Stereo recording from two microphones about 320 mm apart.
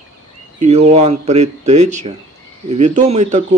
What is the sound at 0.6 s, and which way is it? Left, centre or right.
Speech, right.